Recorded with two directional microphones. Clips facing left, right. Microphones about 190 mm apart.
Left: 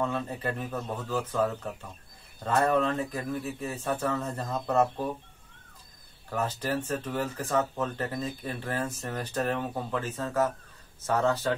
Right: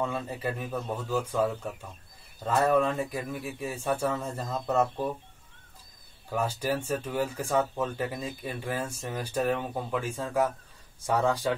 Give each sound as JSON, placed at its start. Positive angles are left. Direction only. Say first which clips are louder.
{"t": 0.0, "sound": "speech", "louder": "left 1 dB", "side_deg": -5}
{"t": 6.3, "sound": "speech", "louder": "right 1 dB", "side_deg": -10}